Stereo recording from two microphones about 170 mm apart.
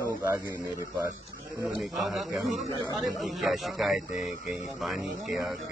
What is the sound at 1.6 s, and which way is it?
Speech, centre (ahead or behind).